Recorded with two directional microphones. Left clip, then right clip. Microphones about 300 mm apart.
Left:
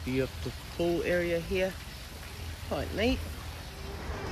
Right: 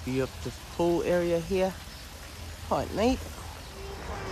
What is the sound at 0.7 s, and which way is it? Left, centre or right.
Speech, right.